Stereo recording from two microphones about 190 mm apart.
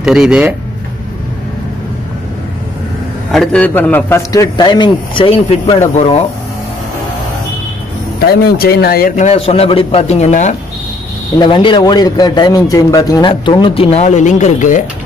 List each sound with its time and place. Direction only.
0.0 s speech: 5° right (ahead or behind)
3.3 s a man's voice: 5° left (ahead or behind); by 6.0 s 35° left (ahead or behind)
8.2 s speech: 55° left (ahead or behind)
9.1 s a man's voice: 35° left (ahead or behind)
11.3 s a man's voice: 25° left (ahead or behind); by 14.9 s 40° left (ahead or behind)